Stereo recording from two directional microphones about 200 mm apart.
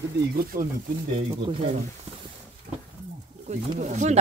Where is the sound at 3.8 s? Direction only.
35° right (ahead or behind).